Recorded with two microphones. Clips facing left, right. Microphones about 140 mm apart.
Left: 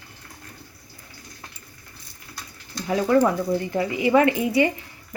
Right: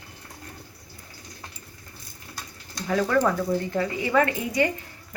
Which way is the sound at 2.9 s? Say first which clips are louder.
Left 3 dB; 15° left (ahead or behind).